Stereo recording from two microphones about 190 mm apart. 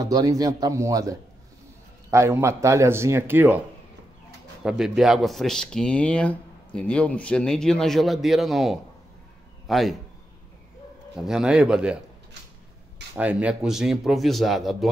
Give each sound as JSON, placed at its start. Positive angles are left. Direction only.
{"t": 0.0, "sound": "a man's voice", "side_deg": -20}
{"t": 4.6, "sound": "a man's voice", "side_deg": -5}
{"t": 11.1, "sound": "speech", "side_deg": -5}
{"t": 13.1, "sound": "speech", "side_deg": -5}